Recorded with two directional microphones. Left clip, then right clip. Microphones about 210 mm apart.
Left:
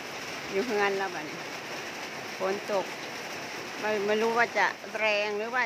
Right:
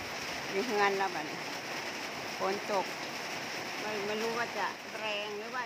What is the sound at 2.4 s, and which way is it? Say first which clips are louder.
Speech: left 3 dB; 10° left (ahead or behind).